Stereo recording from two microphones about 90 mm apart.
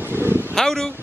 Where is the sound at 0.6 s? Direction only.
5° left (ahead or behind).